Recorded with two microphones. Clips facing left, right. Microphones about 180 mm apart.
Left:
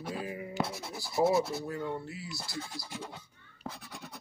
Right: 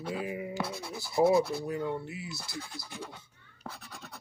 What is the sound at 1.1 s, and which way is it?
Rub, 25° left (ahead or behind).